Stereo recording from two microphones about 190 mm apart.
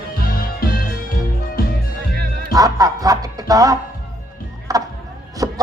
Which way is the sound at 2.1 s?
55° right (ahead or behind).